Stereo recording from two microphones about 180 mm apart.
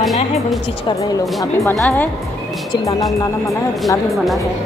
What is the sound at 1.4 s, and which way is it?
Speech, 15° left (ahead or behind).